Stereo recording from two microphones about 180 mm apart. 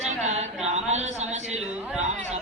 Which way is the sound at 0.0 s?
40° right (ahead or behind).